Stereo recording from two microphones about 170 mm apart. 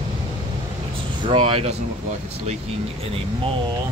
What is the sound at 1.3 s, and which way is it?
Speech, 30° right (ahead or behind).